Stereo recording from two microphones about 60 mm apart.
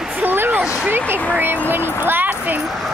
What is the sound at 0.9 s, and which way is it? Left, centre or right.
Speech, right.